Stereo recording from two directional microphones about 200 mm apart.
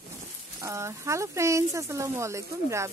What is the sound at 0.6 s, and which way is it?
Speech, 15° right (ahead or behind).